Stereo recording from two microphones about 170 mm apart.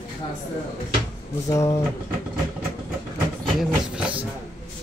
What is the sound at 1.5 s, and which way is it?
Speech, 15° left (ahead or behind).